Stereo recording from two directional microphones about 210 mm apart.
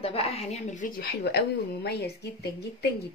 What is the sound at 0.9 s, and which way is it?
A woman's voice, 50° left (ahead or behind).